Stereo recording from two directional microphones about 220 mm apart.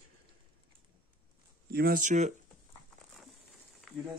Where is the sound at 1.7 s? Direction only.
45° right (ahead or behind).